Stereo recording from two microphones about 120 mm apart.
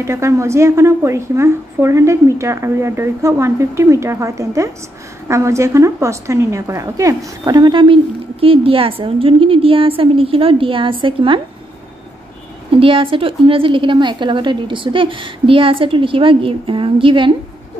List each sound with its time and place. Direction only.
0.0 s a woman's voice: 25° right (ahead or behind); by 11.4 s 45° right (ahead or behind)
12.7 s a woman's voice: 45° right (ahead or behind)